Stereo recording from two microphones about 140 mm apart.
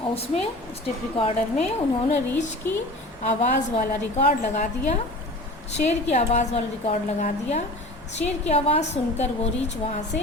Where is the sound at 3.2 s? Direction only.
55° left (ahead or behind).